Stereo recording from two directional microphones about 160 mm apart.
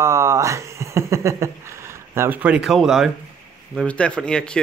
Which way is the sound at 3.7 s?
5° left (ahead or behind).